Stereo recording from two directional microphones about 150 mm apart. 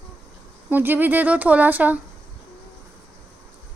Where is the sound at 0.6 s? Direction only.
10° right (ahead or behind).